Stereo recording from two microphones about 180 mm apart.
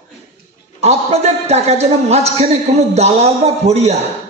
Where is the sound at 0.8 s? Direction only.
35° right (ahead or behind).